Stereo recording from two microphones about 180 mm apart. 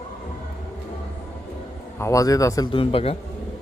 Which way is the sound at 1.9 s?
15° left (ahead or behind).